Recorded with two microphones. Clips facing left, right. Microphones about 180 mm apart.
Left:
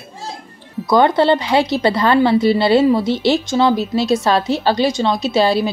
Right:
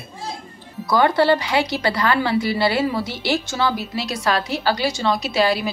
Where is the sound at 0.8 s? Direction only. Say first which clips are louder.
Left 3 dB; 20° left (ahead or behind).